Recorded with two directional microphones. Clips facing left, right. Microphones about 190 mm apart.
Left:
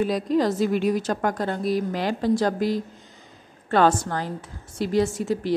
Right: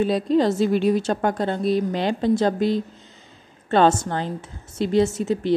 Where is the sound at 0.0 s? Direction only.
25° right (ahead or behind).